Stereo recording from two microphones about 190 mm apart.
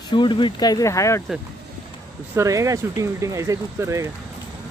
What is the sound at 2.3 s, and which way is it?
Speech, 15° right (ahead or behind).